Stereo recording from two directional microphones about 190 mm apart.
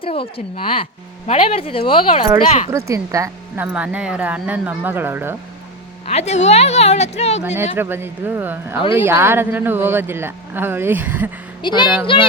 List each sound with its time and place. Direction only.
0.0 s speech: 30° left (ahead or behind)
2.7 s speech: 15° right (ahead or behind)
6.1 s a woman's voice: 35° left (ahead or behind)
7.4 s speech: 10° right (ahead or behind)
11.6 s speech: 25° left (ahead or behind)